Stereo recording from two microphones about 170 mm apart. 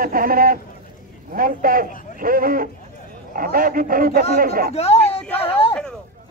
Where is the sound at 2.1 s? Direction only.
60° right (ahead or behind).